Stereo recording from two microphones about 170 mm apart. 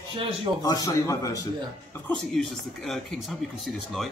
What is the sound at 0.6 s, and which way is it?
Speech, 20° left (ahead or behind).